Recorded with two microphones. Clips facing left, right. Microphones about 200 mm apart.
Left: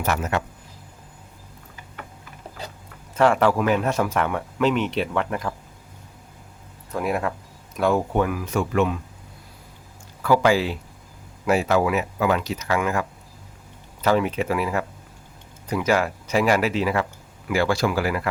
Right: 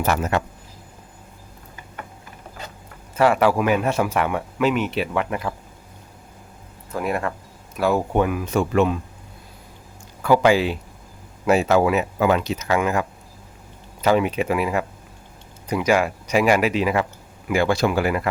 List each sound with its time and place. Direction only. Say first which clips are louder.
0.0 s speech: right 3 dB; 35° right (ahead or behind)
3.2 s speech: right 1 dB; 5° right (ahead or behind)
6.9 s speech: even; centre (ahead or behind)
8.1 s speech: right 2 dB; 20° right (ahead or behind)
10.2 s speech: right 2 dB; 20° right (ahead or behind)